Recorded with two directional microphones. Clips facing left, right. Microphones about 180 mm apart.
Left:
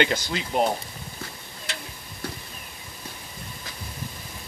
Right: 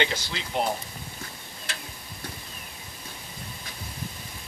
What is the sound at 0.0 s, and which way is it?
Speech, 50° left (ahead or behind).